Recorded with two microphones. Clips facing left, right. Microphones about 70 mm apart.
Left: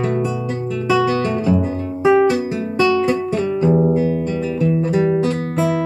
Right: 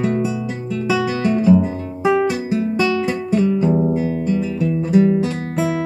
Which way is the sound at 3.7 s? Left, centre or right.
Centre.